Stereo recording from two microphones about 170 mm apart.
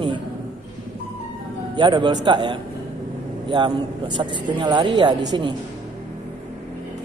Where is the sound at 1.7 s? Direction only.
25° right (ahead or behind).